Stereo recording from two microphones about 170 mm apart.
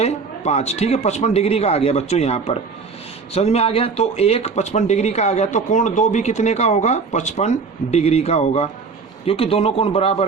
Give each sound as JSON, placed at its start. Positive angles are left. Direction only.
{"t": 0.0, "sound": "speech", "side_deg": 40}